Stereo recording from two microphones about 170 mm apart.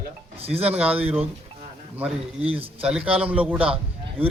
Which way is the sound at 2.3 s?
35° right (ahead or behind).